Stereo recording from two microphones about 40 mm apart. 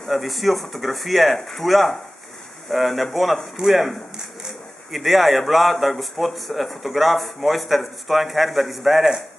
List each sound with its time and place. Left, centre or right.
0.1 s a man's voice: centre